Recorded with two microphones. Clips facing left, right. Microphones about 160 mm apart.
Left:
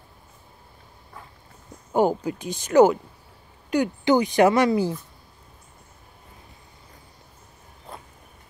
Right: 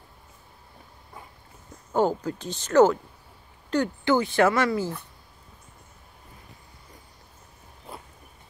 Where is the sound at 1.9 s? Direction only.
15° left (ahead or behind).